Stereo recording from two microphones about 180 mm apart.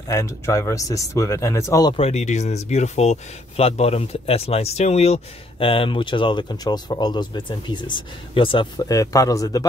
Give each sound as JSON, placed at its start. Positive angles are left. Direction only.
{"t": 0.1, "sound": "speech", "side_deg": 15}
{"t": 2.0, "sound": "speech", "side_deg": 35}